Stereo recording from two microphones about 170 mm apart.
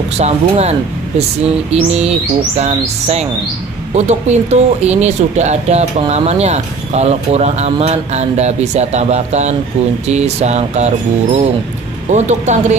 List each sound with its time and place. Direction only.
0.2 s speech: 40° right (ahead or behind)
12.1 s speech: 45° right (ahead or behind)